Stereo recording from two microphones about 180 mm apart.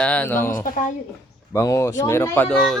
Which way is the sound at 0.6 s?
45° left (ahead or behind).